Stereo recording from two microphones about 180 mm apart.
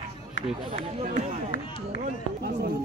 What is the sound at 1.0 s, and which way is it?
Speech, 40° right (ahead or behind).